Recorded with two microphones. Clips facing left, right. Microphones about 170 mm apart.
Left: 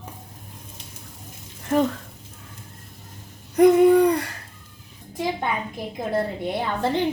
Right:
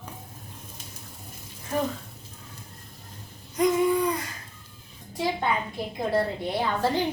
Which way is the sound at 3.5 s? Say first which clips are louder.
Left 8 dB; 60° left (ahead or behind).